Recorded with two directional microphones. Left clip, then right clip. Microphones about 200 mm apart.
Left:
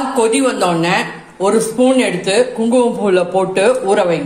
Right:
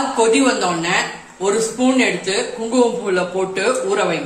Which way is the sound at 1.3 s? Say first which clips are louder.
Left 5 dB; 40° left (ahead or behind).